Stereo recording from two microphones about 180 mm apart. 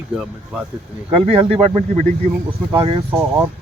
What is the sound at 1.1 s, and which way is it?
Speech, 30° right (ahead or behind).